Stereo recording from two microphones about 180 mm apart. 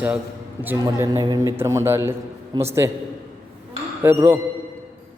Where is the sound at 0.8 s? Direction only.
20° right (ahead or behind).